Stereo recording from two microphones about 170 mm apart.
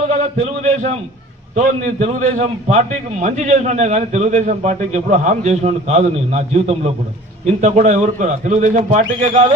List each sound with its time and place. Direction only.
0.3 s a man's voice: 40° right (ahead or behind)